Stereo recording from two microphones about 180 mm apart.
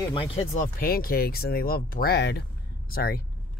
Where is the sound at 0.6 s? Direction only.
55° left (ahead or behind).